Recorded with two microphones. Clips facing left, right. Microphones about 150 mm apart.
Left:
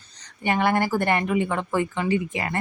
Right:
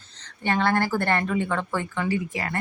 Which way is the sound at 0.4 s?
15° left (ahead or behind).